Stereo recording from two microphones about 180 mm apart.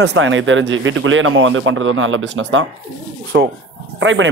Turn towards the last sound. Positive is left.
turn(degrees=-90)